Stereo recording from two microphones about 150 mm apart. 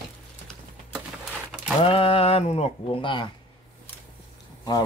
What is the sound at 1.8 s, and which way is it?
Speech, 40° left (ahead or behind).